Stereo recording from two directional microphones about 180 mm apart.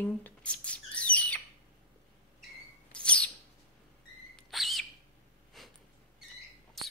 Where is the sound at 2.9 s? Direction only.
5° left (ahead or behind).